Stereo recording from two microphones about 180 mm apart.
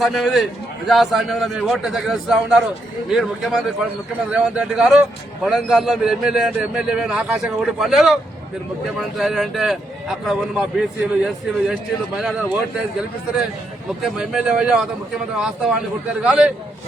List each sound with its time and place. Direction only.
0.0 s a man's voice: centre (ahead or behind)
14.0 s a man's voice: 5° right (ahead or behind)